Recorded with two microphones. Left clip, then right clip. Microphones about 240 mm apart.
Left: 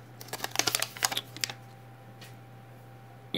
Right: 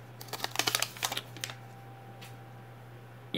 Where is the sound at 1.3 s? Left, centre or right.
Left.